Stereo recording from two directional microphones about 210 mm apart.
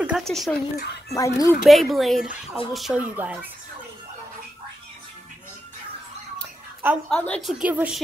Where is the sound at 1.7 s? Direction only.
Centre (ahead or behind).